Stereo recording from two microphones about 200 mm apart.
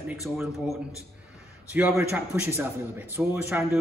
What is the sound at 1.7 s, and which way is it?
A man's voice, 10° right (ahead or behind).